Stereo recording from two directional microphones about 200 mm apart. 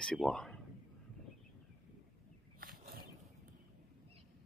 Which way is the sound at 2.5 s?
50° right (ahead or behind).